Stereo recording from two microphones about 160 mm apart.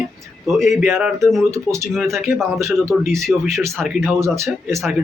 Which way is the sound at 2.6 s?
Centre (ahead or behind).